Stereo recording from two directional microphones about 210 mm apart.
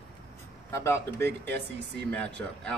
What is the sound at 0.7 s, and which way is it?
Speech, 10° left (ahead or behind).